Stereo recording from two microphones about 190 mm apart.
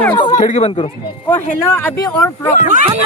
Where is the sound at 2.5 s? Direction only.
40° left (ahead or behind).